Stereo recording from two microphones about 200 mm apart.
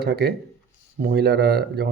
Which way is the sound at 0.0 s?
55° right (ahead or behind).